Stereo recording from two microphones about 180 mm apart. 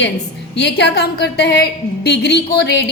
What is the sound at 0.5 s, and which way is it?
A woman's voice, 70° left (ahead or behind).